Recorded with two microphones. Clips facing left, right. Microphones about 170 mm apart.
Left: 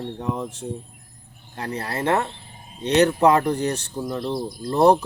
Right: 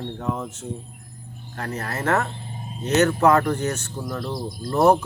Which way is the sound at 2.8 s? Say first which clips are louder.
Left 2 dB; 30° left (ahead or behind).